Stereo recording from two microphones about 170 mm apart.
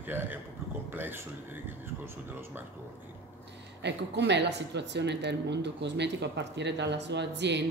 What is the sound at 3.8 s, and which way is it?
A woman's voice, 90° right.